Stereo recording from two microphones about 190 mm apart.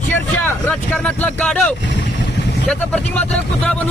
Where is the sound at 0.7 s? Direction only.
5° left (ahead or behind).